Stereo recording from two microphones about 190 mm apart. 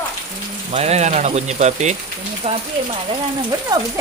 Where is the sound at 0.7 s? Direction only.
35° right (ahead or behind).